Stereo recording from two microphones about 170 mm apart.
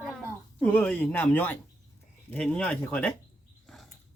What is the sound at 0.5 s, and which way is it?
Speech, 10° left (ahead or behind).